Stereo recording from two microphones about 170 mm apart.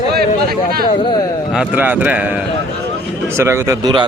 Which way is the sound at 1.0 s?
30° left (ahead or behind).